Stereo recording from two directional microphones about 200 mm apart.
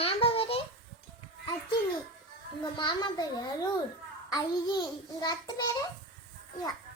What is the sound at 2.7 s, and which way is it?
A child's voice, 25° left (ahead or behind).